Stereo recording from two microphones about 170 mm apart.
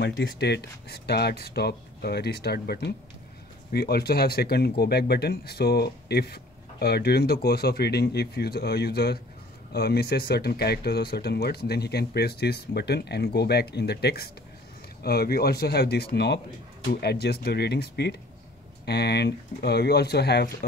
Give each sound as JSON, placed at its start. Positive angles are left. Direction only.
{"t": 0.0, "sound": "speech", "side_deg": 75}